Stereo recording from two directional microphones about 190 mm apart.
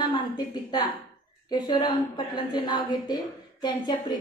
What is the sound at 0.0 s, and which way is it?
A woman's voice, 20° left (ahead or behind).